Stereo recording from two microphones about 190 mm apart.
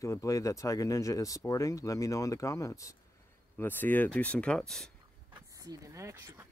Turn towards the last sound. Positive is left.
turn(degrees=-15)  # may be behind; listen again after turning